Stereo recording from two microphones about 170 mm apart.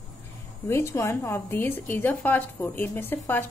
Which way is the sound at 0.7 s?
15° left (ahead or behind).